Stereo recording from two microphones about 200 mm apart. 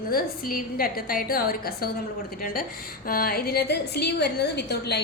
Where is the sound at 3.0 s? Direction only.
50° left (ahead or behind).